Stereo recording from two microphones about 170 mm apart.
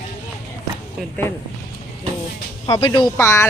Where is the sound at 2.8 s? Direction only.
25° left (ahead or behind).